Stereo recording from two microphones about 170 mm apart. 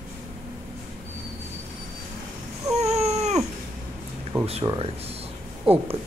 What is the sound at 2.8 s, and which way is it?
Cat, 40° right (ahead or behind).